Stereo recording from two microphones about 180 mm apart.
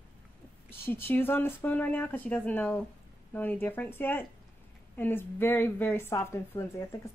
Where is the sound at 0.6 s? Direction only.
10° left (ahead or behind).